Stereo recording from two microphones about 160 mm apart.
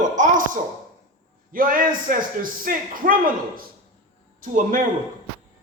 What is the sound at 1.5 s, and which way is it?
A man's voice, 60° right (ahead or behind).